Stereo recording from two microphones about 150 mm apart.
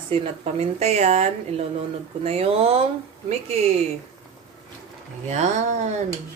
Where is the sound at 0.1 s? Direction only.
45° right (ahead or behind).